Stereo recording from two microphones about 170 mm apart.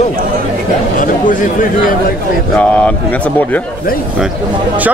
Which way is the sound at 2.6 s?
5° left (ahead or behind).